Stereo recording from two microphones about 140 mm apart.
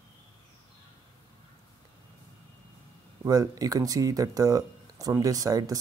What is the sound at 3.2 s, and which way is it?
Speech, 25° right (ahead or behind).